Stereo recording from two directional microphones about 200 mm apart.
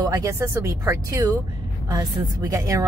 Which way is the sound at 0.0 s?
15° right (ahead or behind).